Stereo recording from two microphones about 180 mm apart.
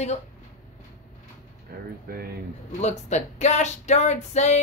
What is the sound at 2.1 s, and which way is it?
Speech, 55° right (ahead or behind).